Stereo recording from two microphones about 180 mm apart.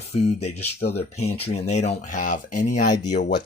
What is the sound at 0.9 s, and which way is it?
Speech, 35° left (ahead or behind).